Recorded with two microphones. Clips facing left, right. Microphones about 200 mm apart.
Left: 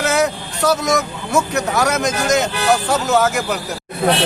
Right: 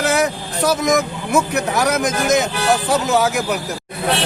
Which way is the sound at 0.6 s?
15° right (ahead or behind).